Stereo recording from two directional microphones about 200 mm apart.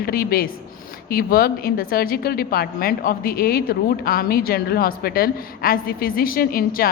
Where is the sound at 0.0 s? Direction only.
50° left (ahead or behind).